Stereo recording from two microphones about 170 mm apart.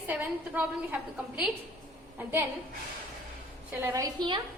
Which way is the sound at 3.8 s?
20° right (ahead or behind).